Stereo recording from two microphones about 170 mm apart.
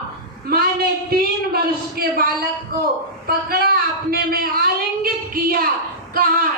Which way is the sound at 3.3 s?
65° right (ahead or behind).